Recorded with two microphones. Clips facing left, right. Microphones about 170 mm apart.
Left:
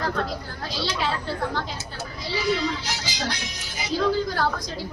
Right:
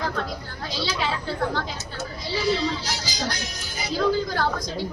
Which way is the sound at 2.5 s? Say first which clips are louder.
Right 1 dB; 30° right (ahead or behind).